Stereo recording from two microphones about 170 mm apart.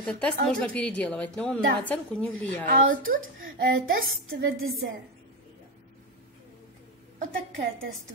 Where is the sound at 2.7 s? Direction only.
55° right (ahead or behind).